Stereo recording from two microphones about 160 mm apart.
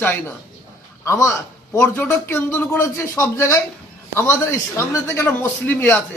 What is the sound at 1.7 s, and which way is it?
A man's voice, 15° left (ahead or behind).